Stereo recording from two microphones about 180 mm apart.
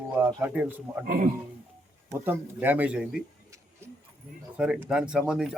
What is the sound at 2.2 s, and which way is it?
Speech, 10° right (ahead or behind).